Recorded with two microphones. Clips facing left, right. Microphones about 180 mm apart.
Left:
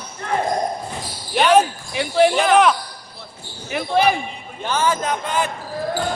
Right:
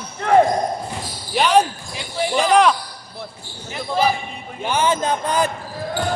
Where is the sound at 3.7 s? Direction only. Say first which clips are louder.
Left 2 dB; 70° left (ahead or behind).